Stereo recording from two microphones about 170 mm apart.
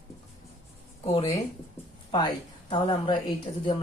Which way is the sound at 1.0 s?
35° left (ahead or behind).